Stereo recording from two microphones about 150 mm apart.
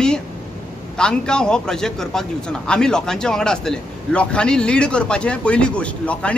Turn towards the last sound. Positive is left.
turn(degrees=10)  # may be behind; listen again after turning